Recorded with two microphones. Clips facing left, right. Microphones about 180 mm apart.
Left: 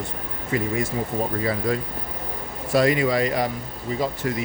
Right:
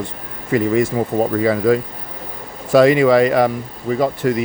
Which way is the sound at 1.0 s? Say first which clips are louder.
Right 7 dB; 70° right (ahead or behind).